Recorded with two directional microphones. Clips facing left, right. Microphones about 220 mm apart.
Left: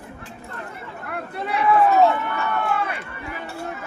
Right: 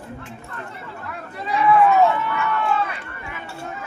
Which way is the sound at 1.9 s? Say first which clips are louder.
Even; 35° left (ahead or behind).